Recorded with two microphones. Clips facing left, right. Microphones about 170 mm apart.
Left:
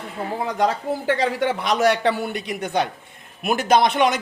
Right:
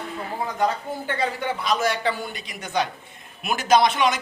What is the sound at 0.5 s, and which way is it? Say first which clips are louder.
A man's voice: left 3 dB; 90° left.